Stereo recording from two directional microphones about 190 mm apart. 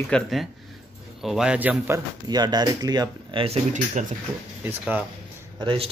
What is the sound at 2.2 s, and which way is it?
Speech, 20° right (ahead or behind).